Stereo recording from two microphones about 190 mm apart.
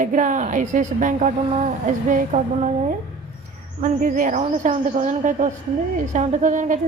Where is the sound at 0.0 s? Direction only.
45° right (ahead or behind).